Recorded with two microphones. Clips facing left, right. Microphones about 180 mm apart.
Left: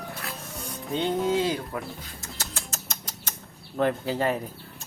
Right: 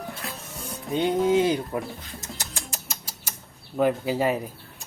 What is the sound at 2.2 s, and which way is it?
Music, 15° right (ahead or behind).